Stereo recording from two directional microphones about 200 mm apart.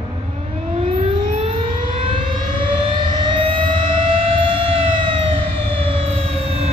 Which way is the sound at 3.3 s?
25° right (ahead or behind).